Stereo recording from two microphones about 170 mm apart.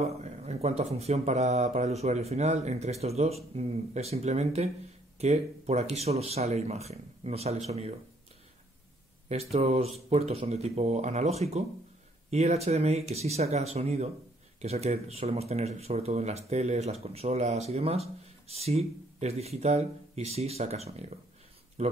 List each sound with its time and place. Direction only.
0.2 s speech: 40° right (ahead or behind)
9.3 s speech: 40° right (ahead or behind)